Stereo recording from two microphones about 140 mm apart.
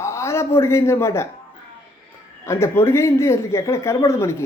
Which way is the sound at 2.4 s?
20° left (ahead or behind).